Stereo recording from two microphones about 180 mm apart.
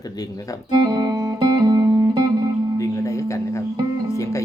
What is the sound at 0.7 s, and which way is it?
Music, 20° right (ahead or behind).